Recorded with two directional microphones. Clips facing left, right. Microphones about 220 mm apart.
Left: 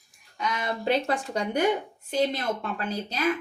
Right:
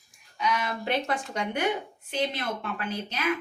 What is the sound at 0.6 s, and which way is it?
A woman's voice, 35° left (ahead or behind).